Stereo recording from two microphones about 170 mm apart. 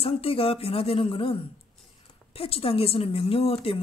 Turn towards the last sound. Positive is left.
turn(degrees=35)  # may be behind; listen again after turning